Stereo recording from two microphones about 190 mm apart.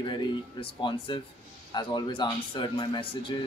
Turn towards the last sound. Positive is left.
turn(degrees=25)  # may be behind; listen again after turning